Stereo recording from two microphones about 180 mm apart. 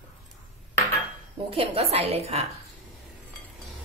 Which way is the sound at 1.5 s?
35° right (ahead or behind).